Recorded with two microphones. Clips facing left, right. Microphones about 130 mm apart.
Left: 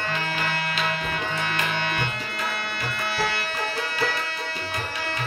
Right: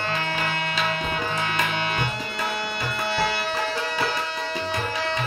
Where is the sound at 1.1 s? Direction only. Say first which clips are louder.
Right 2 dB; 20° right (ahead or behind).